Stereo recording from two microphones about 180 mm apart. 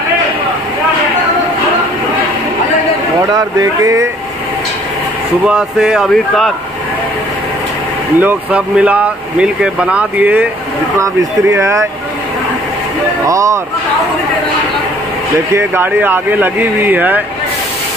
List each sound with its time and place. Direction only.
3.3 s speech: 20° right (ahead or behind)
5.4 s speech: 5° right (ahead or behind)
8.2 s speech: 10° right (ahead or behind)
13.3 s speech: 15° right (ahead or behind)
15.5 s speech: 10° right (ahead or behind)